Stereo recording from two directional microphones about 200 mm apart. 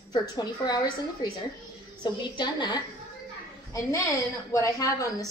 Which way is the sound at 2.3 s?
20° left (ahead or behind).